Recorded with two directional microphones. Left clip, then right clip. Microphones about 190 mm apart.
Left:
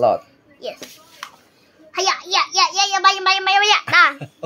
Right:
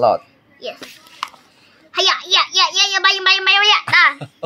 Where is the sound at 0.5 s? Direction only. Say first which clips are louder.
Right 1 dB; 35° left (ahead or behind).